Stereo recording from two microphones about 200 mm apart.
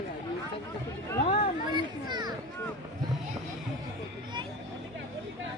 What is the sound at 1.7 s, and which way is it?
Children playing, 20° right (ahead or behind).